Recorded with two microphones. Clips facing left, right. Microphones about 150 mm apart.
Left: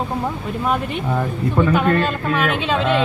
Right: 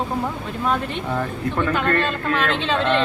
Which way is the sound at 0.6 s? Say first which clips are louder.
Left 1 dB; 10° left (ahead or behind).